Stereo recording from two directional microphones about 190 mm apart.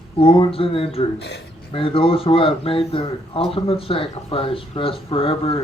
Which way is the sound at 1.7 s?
30° left (ahead or behind).